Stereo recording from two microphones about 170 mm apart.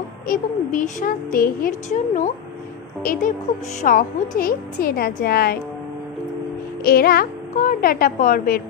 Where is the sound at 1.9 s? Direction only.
45° left (ahead or behind); by 5.6 s 65° left (ahead or behind).